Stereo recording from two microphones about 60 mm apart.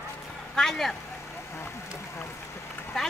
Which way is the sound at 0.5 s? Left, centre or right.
Centre.